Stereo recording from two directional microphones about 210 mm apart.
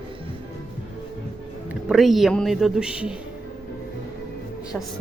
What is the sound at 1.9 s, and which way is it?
A woman's voice, centre (ahead or behind).